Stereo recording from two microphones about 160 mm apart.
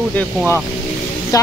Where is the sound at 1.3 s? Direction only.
20° left (ahead or behind).